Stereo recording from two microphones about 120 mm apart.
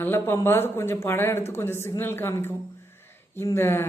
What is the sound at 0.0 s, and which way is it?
A man's voice, 20° left (ahead or behind).